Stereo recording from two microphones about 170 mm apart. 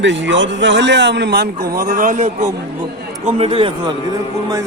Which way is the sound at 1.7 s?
60° right (ahead or behind).